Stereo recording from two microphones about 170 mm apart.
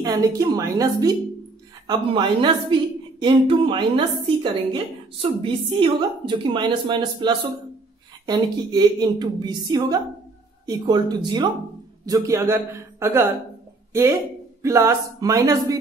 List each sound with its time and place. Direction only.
0.0 s a woman's voice: 20° right (ahead or behind)
14.6 s a woman's voice: 20° right (ahead or behind)